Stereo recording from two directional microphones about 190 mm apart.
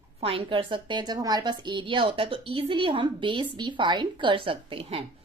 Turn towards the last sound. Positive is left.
turn(degrees=-30)  # may be behind; listen again after turning